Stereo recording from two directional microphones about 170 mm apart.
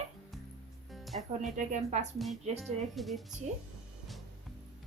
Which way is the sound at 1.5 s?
45° right (ahead or behind).